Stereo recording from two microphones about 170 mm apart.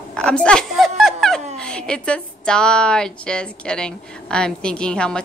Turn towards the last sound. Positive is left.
turn(degrees=5)  # may be behind; listen again after turning